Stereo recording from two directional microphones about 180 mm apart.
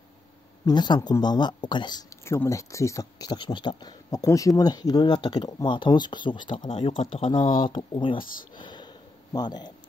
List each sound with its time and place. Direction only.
0.7 s speech: 25° left (ahead or behind)
8.5 s sniff: 25° left (ahead or behind)